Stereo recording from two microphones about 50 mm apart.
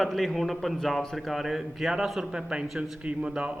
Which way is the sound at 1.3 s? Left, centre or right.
Centre.